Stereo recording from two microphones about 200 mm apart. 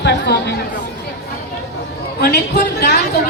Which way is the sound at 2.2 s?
55° left (ahead or behind).